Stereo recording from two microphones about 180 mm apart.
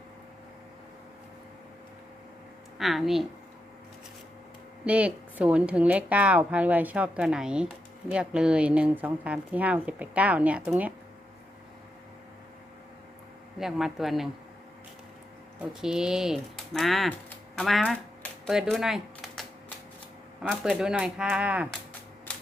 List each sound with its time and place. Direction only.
2.7 s speech: centre (ahead or behind)
4.9 s a woman's voice: 5° right (ahead or behind)
13.6 s speech: centre (ahead or behind)
15.8 s speech: 5° right (ahead or behind)